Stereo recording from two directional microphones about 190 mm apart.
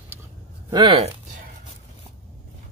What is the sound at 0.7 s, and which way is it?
Speech, 25° right (ahead or behind).